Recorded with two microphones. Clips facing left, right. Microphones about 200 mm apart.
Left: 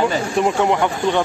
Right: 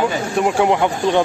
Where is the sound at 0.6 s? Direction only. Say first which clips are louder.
Right 1 dB; 15° right (ahead or behind).